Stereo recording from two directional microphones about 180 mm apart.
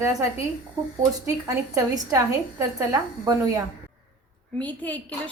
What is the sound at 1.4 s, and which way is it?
A woman's voice, 20° right (ahead or behind).